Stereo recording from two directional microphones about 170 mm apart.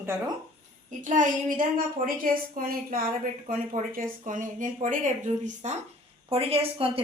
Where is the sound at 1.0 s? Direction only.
50° right (ahead or behind).